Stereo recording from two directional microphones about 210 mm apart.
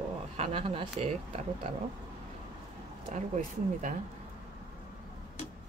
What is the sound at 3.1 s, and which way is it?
Speech, 35° right (ahead or behind).